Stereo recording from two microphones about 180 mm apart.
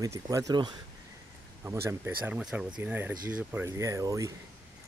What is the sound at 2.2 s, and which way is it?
Speech, 5° right (ahead or behind).